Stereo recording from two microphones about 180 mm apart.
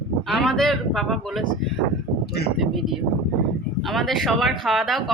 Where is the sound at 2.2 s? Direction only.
65° left (ahead or behind).